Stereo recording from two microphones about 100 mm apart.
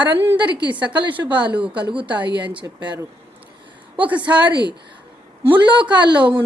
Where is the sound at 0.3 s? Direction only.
50° right (ahead or behind).